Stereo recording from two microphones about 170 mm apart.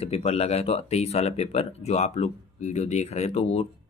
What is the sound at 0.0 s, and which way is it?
Speech, 35° left (ahead or behind).